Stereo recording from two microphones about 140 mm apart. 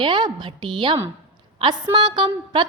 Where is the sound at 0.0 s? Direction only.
30° right (ahead or behind).